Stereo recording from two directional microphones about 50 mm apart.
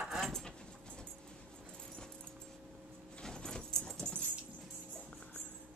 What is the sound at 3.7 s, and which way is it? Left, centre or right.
Dog, centre.